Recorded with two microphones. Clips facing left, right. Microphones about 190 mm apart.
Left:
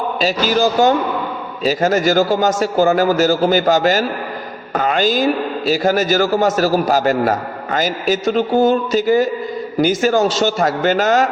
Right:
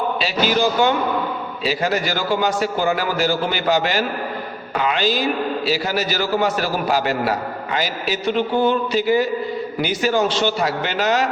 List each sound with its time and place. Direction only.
0.2 s a man's voice: 40° left (ahead or behind)